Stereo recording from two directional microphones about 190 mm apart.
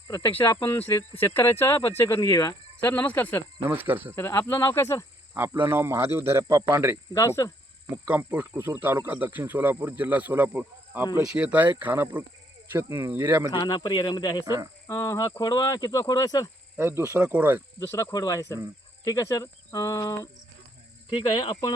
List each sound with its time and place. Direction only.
0.4 s speech: 20° left (ahead or behind)
2.8 s speech: 10° left (ahead or behind)
3.6 s speech: 10° right (ahead or behind)
4.1 s speech: 15° left (ahead or behind)
5.6 s speech: 10° right (ahead or behind)
6.9 s speech: 20° left (ahead or behind)
8.0 s speech: 10° right (ahead or behind)
13.5 s speech: 25° left (ahead or behind)
14.4 s speech: 15° right (ahead or behind)
14.8 s speech: 15° left (ahead or behind)
16.7 s speech: 10° right (ahead or behind)
17.7 s speech: 15° left (ahead or behind)
21.2 s speech: 20° left (ahead or behind)